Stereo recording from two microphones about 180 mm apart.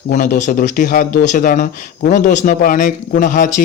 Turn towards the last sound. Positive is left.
turn(degrees=45)  # may be behind; listen again after turning